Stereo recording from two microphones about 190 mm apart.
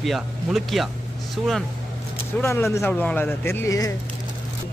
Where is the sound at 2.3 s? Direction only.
10° left (ahead or behind).